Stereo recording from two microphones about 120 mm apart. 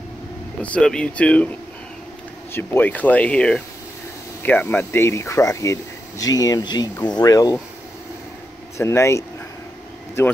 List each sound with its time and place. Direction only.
0.6 s speech: 10° left (ahead or behind)
2.5 s speech: 20° left (ahead or behind)
8.7 s speech: 25° left (ahead or behind)